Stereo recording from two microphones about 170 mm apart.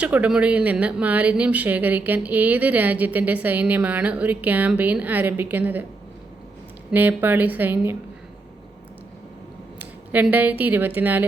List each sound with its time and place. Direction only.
0.0 s speech: 5° right (ahead or behind)
6.9 s speech: 10° right (ahead or behind)
9.7 s speech: 10° right (ahead or behind)